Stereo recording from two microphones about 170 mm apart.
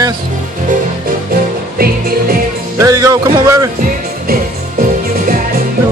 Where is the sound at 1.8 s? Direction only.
60° right (ahead or behind).